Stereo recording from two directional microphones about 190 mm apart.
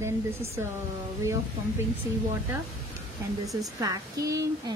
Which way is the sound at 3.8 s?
20° right (ahead or behind).